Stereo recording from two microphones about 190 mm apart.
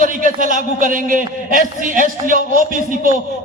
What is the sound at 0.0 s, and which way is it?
A man's voice, 45° right (ahead or behind).